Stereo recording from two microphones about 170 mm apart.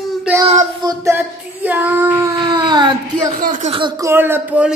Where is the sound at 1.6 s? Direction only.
10° right (ahead or behind).